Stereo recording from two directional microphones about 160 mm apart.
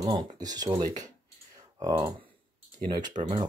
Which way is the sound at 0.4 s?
25° right (ahead or behind).